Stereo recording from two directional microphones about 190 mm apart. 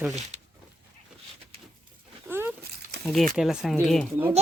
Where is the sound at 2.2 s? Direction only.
10° right (ahead or behind).